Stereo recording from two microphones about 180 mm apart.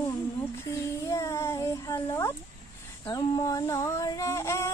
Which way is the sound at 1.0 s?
15° left (ahead or behind).